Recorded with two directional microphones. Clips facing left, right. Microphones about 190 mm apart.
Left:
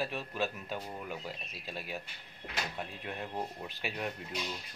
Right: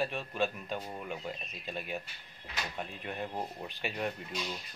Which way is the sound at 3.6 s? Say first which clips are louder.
Right 2 dB; centre (ahead or behind).